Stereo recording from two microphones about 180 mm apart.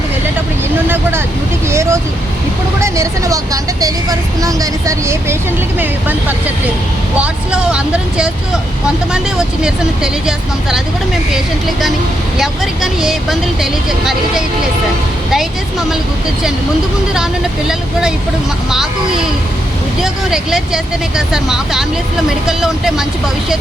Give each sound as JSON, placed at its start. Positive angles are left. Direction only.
{"t": 1.7, "sound": "vehicle", "side_deg": -15}
{"t": 2.8, "sound": "speech", "side_deg": -15}
{"t": 9.1, "sound": "speech", "side_deg": -5}
{"t": 12.4, "sound": "speech", "side_deg": 0}
{"t": 18.7, "sound": "speech", "side_deg": -5}